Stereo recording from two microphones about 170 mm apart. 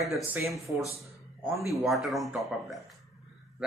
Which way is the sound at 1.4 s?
Centre (ahead or behind).